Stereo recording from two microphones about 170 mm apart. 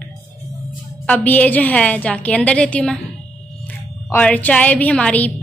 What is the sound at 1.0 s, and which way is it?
A woman's voice, 10° left (ahead or behind).